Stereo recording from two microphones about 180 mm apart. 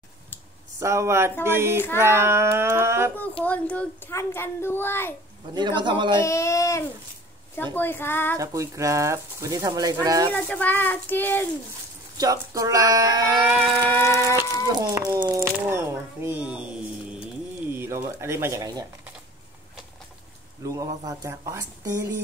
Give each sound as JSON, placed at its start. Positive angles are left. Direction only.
{"t": 0.7, "sound": "speech", "side_deg": -15}
{"t": 3.4, "sound": "a child's voice", "side_deg": 10}
{"t": 5.8, "sound": "speech", "side_deg": -25}
{"t": 6.1, "sound": "a child's voice", "side_deg": 15}
{"t": 8.4, "sound": "speech", "side_deg": -15}
{"t": 10.3, "sound": "a child's voice", "side_deg": 10}
{"t": 12.2, "sound": "speech", "side_deg": -20}
{"t": 17.6, "sound": "speech", "side_deg": -15}
{"t": 20.6, "sound": "speech", "side_deg": -20}